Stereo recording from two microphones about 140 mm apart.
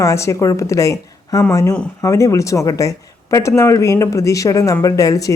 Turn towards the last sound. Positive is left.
turn(degrees=25)  # may be behind; listen again after turning